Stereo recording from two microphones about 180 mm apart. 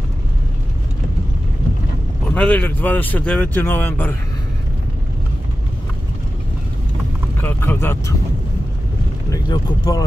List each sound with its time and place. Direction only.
2.3 s speech: 5° left (ahead or behind)
7.3 s speech: 10° left (ahead or behind)
9.3 s speech: 20° left (ahead or behind)